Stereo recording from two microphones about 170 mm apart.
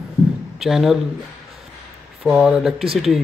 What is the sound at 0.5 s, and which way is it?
Speech, centre (ahead or behind).